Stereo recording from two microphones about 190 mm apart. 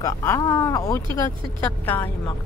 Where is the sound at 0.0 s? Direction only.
15° left (ahead or behind).